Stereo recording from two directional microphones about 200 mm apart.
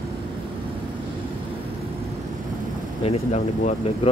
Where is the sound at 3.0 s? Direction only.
35° left (ahead or behind).